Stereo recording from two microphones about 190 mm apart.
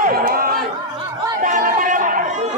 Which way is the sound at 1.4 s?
45° right (ahead or behind).